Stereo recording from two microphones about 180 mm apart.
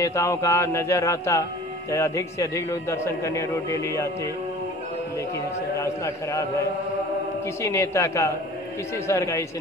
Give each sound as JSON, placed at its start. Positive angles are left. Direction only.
{"t": 0.0, "sound": "a man's voice", "side_deg": 15}
{"t": 5.8, "sound": "a man's voice", "side_deg": 15}
{"t": 7.6, "sound": "a man's voice", "side_deg": 15}